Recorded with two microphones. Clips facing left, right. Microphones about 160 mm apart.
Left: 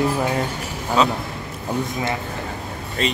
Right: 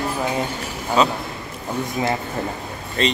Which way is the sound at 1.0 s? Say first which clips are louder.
Even; centre (ahead or behind).